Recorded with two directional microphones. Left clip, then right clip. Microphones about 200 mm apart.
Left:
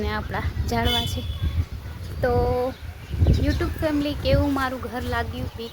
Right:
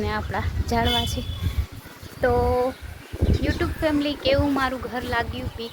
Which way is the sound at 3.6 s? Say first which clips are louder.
Right 3 dB; 5° left (ahead or behind).